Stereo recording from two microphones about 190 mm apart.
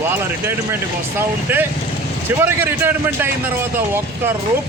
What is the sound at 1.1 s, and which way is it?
Speech, 10° right (ahead or behind).